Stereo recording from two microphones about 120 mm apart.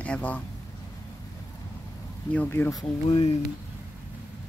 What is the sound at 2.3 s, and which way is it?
Speech, 15° left (ahead or behind).